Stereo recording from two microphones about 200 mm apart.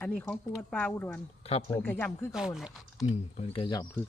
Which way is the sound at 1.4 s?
30° left (ahead or behind).